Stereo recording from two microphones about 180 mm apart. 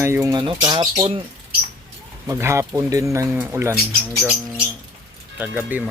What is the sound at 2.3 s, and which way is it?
Speech, 15° right (ahead or behind).